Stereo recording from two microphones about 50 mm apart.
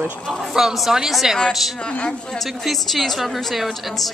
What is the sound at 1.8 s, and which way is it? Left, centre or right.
Speech, centre.